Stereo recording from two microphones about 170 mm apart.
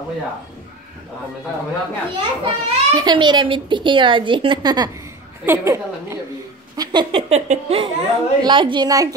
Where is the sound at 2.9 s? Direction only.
25° right (ahead or behind).